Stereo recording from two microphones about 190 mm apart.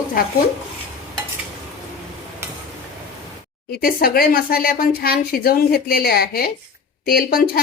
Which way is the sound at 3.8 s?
50° left (ahead or behind).